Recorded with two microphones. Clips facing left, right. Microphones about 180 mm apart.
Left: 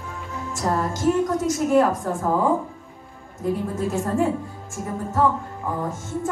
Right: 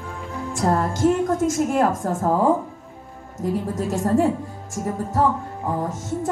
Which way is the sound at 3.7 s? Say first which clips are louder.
Right 5 dB; 40° right (ahead or behind).